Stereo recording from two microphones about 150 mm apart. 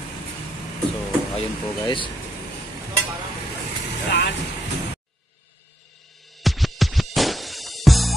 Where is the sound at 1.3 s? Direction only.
35° left (ahead or behind).